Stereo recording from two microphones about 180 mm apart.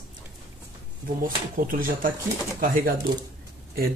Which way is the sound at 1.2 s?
50° right (ahead or behind).